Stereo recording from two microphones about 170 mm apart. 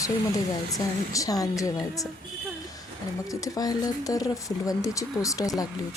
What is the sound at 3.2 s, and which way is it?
A woman's voice, 20° left (ahead or behind).